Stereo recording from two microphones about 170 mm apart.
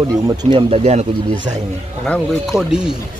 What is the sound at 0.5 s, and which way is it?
Speech, 35° right (ahead or behind).